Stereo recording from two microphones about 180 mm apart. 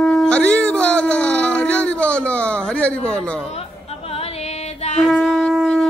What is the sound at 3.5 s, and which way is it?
Music, 35° left (ahead or behind).